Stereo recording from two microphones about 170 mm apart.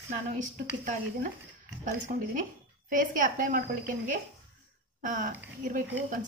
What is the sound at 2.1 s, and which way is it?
A woman's voice, 50° right (ahead or behind).